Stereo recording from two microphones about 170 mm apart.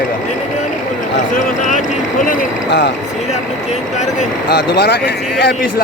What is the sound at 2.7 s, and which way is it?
Speech, 90° left.